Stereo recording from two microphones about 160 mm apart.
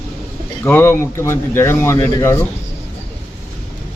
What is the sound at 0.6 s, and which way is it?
Speech, 15° left (ahead or behind).